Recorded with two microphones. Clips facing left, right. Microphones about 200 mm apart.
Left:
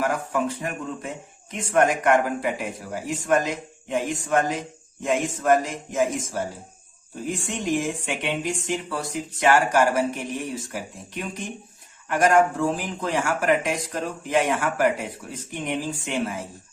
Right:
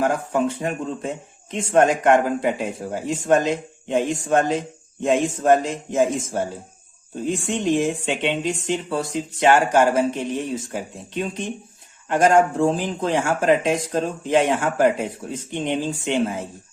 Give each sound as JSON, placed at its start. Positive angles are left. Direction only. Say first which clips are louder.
{"t": 0.0, "sound": "speech", "louder": "right 4 dB", "side_deg": -25}